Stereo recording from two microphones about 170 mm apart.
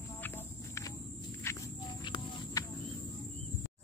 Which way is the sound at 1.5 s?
15° left (ahead or behind).